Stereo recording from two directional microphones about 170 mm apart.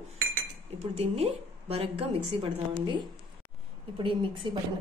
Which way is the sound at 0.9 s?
35° right (ahead or behind).